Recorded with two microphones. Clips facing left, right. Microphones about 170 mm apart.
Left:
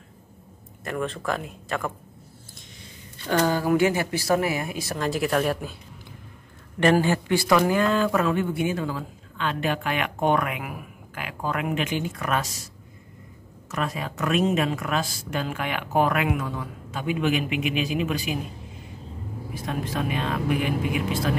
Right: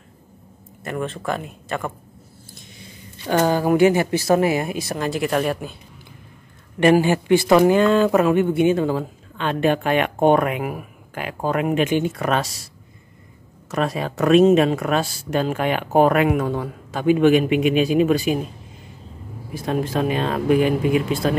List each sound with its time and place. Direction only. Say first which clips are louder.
0.8 s speech: right 2 dB; centre (ahead or behind)
3.3 s speech: right 4 dB; 20° right (ahead or behind)
5.0 s speech: right 2 dB; centre (ahead or behind)
6.8 s speech: right 5 dB; 10° right (ahead or behind)
9.7 s speech: right 10 dB; 40° right (ahead or behind)
14.2 s speech: right 9 dB; 30° right (ahead or behind)
14.9 s speech: right 6 dB; 40° right (ahead or behind); by 16.6 s 60° right (ahead or behind)
16.9 s speech: right 10 dB; 35° right (ahead or behind)
19.9 s speech: right 3 dB; 35° right (ahead or behind)